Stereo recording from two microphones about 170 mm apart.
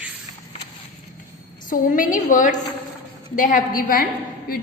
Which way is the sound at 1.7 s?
50° left (ahead or behind).